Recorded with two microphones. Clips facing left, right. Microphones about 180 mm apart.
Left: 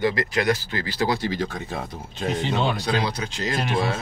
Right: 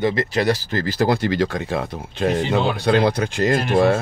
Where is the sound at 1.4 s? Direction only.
80° right; by 4.0 s 55° right (ahead or behind).